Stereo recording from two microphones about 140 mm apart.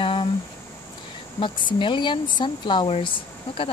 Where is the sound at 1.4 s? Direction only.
35° left (ahead or behind).